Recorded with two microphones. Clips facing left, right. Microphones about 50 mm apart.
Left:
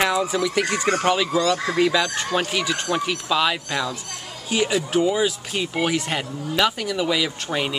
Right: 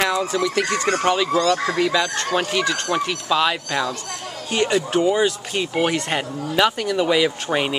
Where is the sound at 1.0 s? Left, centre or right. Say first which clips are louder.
Right 2 dB; centre.